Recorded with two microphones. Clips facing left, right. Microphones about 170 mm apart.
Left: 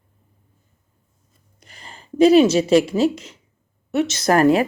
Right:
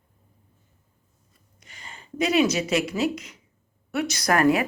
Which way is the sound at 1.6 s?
35° left (ahead or behind).